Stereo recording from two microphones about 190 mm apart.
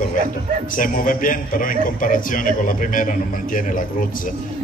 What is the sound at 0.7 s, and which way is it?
A man's voice, 45° left (ahead or behind).